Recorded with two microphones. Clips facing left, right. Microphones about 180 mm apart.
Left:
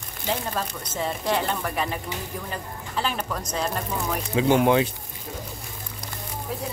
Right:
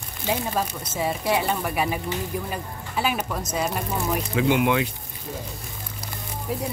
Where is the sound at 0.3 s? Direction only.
10° right (ahead or behind).